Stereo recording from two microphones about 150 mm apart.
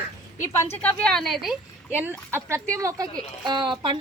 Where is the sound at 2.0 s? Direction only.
15° right (ahead or behind).